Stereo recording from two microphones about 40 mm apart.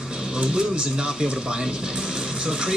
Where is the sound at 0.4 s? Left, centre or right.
Right.